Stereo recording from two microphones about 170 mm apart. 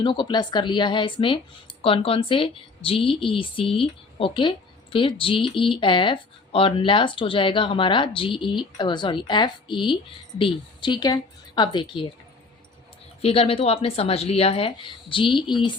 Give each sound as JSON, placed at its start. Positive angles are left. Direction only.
{"t": 0.0, "sound": "a woman's voice", "side_deg": 25}
{"t": 13.2, "sound": "speech", "side_deg": 35}